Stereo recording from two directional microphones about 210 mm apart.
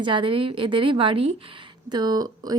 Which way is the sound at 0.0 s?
25° right (ahead or behind).